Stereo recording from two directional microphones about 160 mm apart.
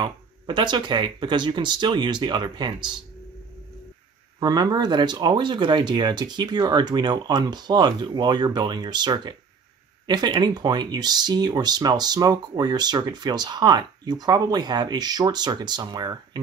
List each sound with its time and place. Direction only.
0.0 s speech: 30° right (ahead or behind)
4.4 s speech: 25° right (ahead or behind)